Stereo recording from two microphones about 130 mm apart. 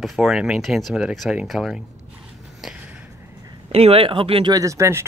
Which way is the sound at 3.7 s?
50° right (ahead or behind).